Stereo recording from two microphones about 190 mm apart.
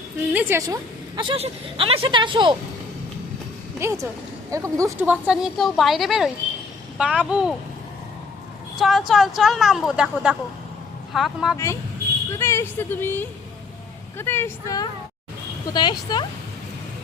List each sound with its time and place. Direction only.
0.3 s a woman's voice: 10° right (ahead or behind)
1.1 s speech: 25° right (ahead or behind)
3.8 s speech: 15° right (ahead or behind)
8.8 s speech: centre (ahead or behind)
11.5 s a woman's voice: 15° left (ahead or behind)